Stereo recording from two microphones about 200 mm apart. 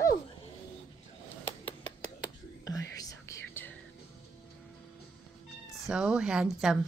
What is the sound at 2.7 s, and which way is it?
Whispering, 15° left (ahead or behind).